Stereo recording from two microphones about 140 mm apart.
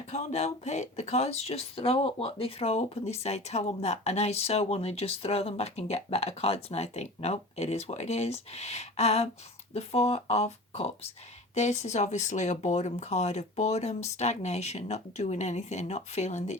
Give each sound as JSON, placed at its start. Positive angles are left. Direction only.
{"t": 0.1, "sound": "speech", "side_deg": 50}